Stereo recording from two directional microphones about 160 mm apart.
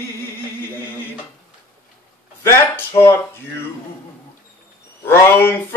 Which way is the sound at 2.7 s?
15° left (ahead or behind).